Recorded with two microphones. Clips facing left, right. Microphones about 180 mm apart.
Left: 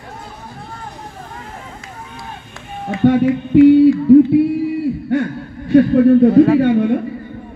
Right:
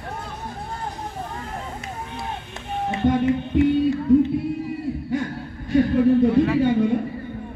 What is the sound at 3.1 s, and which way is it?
Music, 70° left (ahead or behind).